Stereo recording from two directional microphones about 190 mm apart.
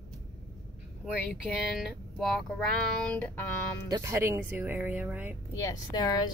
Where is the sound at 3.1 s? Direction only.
10° left (ahead or behind).